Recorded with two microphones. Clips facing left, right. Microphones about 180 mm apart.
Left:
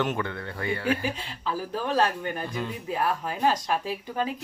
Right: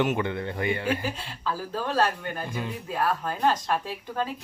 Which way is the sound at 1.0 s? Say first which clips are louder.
Left 1 dB; 15° left (ahead or behind).